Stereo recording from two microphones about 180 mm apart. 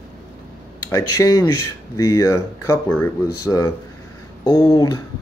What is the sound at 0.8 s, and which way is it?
Speech, 20° left (ahead or behind).